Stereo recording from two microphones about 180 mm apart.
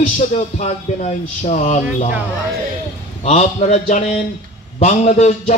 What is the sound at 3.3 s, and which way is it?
A man's voice, 35° left (ahead or behind).